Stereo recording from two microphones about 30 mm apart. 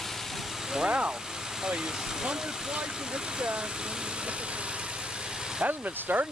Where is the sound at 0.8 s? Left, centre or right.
Right.